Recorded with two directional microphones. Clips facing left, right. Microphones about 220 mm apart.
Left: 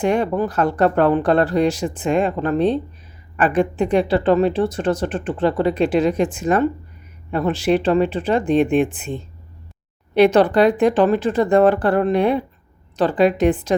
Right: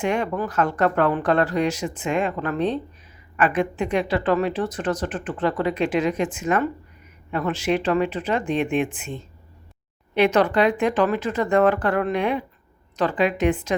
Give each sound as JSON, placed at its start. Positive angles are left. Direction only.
{"t": 0.0, "sound": "a woman's voice", "side_deg": 35}